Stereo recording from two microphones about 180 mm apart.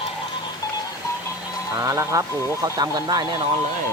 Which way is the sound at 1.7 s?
15° right (ahead or behind).